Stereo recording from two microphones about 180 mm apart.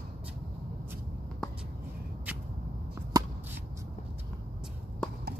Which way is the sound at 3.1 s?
20° right (ahead or behind).